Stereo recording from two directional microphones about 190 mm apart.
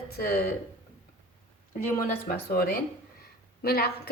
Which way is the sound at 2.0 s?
50° left (ahead or behind).